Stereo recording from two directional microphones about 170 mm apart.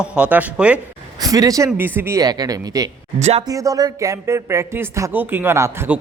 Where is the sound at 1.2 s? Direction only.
20° right (ahead or behind).